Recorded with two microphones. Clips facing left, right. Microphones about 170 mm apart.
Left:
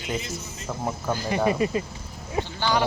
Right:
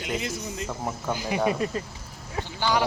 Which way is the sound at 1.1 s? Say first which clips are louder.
Left 1 dB; 10° right (ahead or behind).